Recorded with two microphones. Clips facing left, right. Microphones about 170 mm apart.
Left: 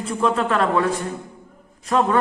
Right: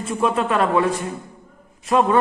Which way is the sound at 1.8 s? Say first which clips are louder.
Right 2 dB; 15° right (ahead or behind).